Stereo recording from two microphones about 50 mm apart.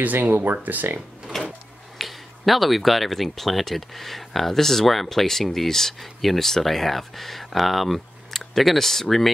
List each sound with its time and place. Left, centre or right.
0.0 s speech: right
1.3 s drawer open or close: centre
2.0 s speech: centre